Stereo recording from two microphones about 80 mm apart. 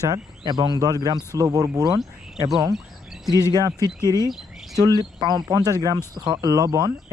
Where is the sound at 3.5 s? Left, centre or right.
Right.